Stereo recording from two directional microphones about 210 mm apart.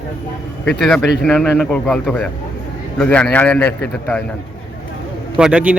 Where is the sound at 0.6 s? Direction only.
5° left (ahead or behind).